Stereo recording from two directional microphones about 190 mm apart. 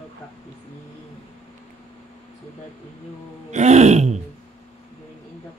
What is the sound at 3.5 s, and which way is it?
Throat clearing, 35° right (ahead or behind).